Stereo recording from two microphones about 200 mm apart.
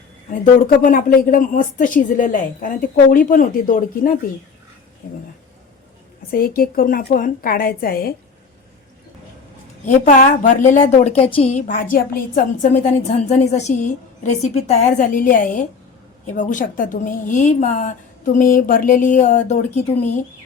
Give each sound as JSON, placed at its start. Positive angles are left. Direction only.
{"t": 0.8, "sound": "a woman's voice", "side_deg": 40}
{"t": 6.3, "sound": "a woman's voice", "side_deg": 45}
{"t": 9.8, "sound": "a woman's voice", "side_deg": 40}